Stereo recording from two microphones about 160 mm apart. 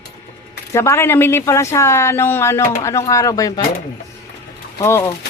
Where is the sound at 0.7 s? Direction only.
15° left (ahead or behind).